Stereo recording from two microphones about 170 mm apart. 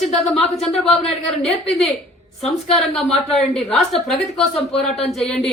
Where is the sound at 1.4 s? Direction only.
35° left (ahead or behind).